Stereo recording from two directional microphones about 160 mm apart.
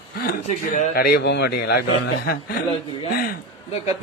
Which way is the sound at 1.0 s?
85° left.